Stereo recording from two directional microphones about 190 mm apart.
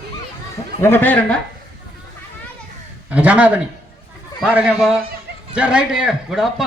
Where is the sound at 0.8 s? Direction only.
10° left (ahead or behind).